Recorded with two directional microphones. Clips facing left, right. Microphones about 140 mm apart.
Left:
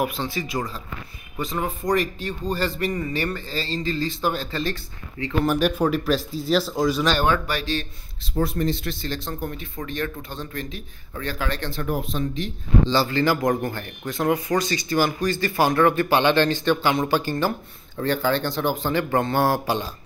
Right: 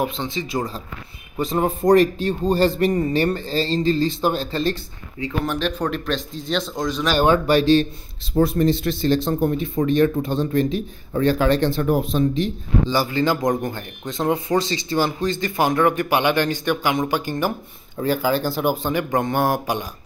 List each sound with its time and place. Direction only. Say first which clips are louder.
0.1 s speech: right 2 dB; 20° right (ahead or behind)
5.4 s speech: left 4 dB; 5° left (ahead or behind)
7.2 s speech: right 6 dB; 25° right (ahead or behind)
12.8 s speech: right 1 dB; 15° right (ahead or behind)